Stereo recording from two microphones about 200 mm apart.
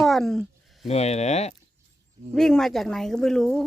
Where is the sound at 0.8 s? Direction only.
35° left (ahead or behind).